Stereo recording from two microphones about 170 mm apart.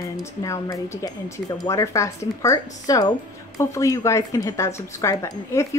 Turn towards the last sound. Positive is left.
turn(degrees=15)  # may be behind; listen again after turning